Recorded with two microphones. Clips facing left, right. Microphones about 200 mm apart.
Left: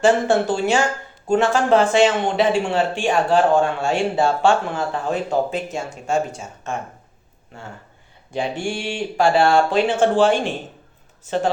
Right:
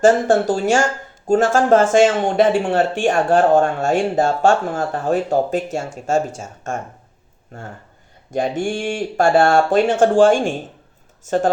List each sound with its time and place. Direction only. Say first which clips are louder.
0.0 s speech: right 3 dB; 40° right (ahead or behind)